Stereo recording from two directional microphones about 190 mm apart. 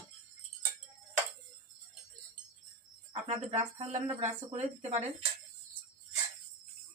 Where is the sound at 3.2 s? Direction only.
35° right (ahead or behind).